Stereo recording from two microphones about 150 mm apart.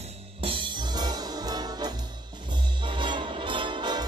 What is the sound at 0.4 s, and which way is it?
Trombone, 35° right (ahead or behind).